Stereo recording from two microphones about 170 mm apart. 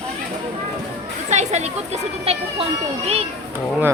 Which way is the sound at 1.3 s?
40° right (ahead or behind).